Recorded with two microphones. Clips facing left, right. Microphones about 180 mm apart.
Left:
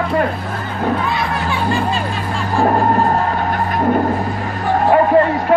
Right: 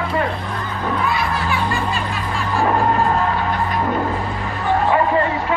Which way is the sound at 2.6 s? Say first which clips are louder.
Left 3 dB; 40° left (ahead or behind).